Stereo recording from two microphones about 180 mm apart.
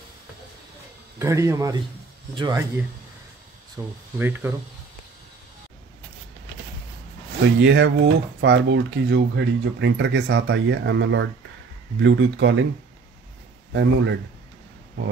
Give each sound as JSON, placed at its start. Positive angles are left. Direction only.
{"t": 1.2, "sound": "speech", "side_deg": -15}
{"t": 3.8, "sound": "speech", "side_deg": -15}
{"t": 7.6, "sound": "speech", "side_deg": -80}
{"t": 13.7, "sound": "a man's voice", "side_deg": -80}